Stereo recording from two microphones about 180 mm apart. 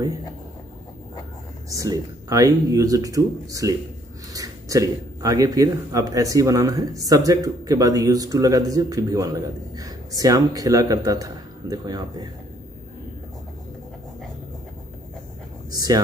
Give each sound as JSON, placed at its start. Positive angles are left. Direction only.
{"t": 1.7, "sound": "a man's voice", "side_deg": -20}
{"t": 15.7, "sound": "speech", "side_deg": -20}